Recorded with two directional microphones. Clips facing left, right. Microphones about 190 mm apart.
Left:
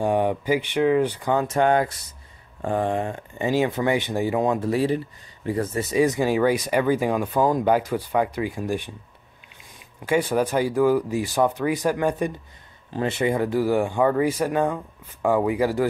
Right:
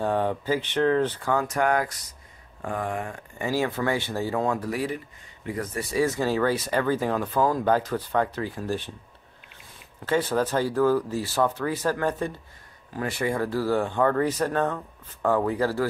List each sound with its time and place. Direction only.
0.0 s speech: 15° left (ahead or behind)
10.0 s speech: 15° left (ahead or behind)